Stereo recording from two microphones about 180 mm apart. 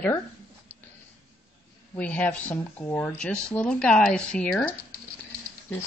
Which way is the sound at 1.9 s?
10° left (ahead or behind).